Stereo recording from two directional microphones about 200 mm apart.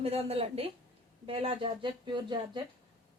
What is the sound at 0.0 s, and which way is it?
A woman's voice, 30° right (ahead or behind).